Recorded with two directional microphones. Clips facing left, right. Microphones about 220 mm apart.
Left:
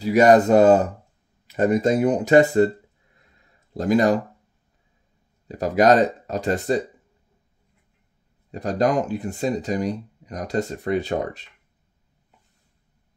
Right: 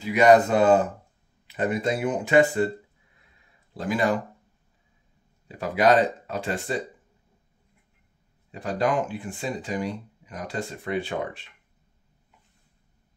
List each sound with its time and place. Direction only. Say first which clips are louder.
0.0 s speech: left 3 dB; 45° left (ahead or behind)
3.7 s speech: left 6 dB; 40° left (ahead or behind)
5.5 s speech: left 4 dB; 45° left (ahead or behind)
8.5 s speech: left 4 dB; 40° left (ahead or behind)